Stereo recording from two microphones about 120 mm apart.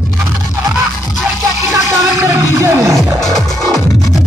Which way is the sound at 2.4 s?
20° right (ahead or behind).